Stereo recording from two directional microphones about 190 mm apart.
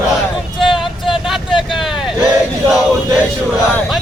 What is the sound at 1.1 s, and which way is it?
Vehicle, 5° right (ahead or behind).